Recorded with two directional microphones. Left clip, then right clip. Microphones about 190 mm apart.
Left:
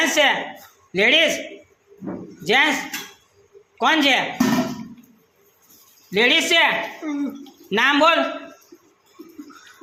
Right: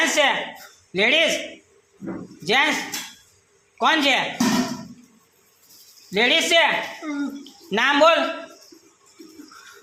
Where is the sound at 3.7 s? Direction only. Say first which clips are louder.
Left 1 dB; centre (ahead or behind).